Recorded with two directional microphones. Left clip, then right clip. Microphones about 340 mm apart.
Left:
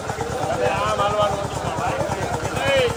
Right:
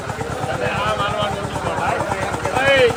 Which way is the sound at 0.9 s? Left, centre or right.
Left.